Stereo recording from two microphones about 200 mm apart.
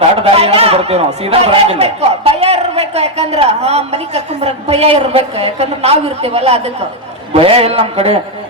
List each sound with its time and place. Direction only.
0.3 s speech: 30° right (ahead or behind)